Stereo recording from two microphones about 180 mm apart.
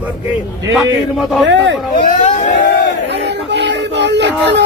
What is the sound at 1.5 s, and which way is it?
Speech, 85° right.